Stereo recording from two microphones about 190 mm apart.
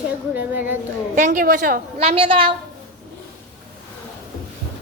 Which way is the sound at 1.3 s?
55° right (ahead or behind).